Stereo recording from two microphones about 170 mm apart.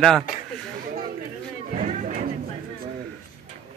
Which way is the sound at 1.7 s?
45° right (ahead or behind).